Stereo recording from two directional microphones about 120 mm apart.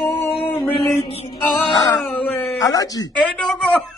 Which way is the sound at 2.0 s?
10° left (ahead or behind).